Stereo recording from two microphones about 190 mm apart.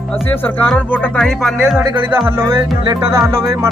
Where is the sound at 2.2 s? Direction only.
10° right (ahead or behind).